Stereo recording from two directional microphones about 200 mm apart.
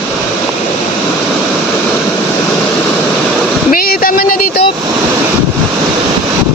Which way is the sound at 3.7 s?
45° left (ahead or behind).